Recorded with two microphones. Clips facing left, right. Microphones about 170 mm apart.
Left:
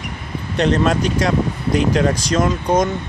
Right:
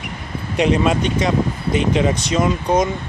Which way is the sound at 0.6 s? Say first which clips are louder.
Even; 5° right (ahead or behind).